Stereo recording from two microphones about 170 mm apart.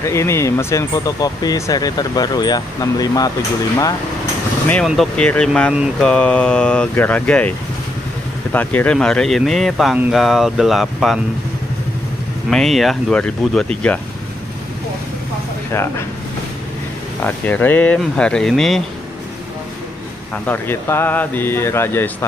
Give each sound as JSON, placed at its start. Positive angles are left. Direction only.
{"t": 0.0, "sound": "speech", "side_deg": 15}
{"t": 4.8, "sound": "speech", "side_deg": 5}
{"t": 12.4, "sound": "speech", "side_deg": 0}
{"t": 17.2, "sound": "speech", "side_deg": 10}
{"t": 20.4, "sound": "speech", "side_deg": 10}